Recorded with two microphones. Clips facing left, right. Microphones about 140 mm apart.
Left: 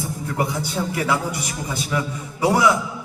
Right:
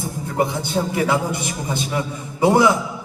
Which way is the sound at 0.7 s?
25° right (ahead or behind).